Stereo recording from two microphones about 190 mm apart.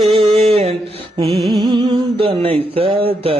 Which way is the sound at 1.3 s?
Centre (ahead or behind).